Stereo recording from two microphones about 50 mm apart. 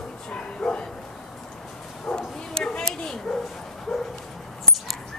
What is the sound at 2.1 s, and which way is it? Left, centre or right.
Bow-wow, centre.